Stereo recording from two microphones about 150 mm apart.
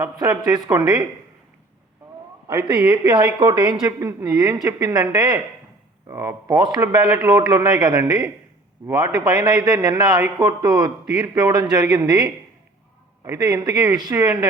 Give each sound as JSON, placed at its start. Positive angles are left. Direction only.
{"t": 0.0, "sound": "a man's voice", "side_deg": -25}
{"t": 2.5, "sound": "speech", "side_deg": -10}
{"t": 2.9, "sound": "a man's voice", "side_deg": -30}
{"t": 7.0, "sound": "speech", "side_deg": -10}
{"t": 7.3, "sound": "a man's voice", "side_deg": -25}